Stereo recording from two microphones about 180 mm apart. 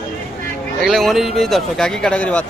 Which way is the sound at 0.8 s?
Centre (ahead or behind).